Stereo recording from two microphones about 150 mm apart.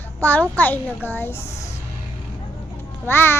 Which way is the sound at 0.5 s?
10° left (ahead or behind).